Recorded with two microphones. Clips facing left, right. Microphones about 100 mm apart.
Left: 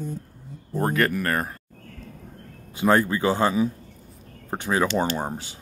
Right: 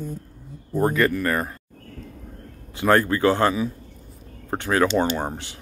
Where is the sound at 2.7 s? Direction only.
15° left (ahead or behind).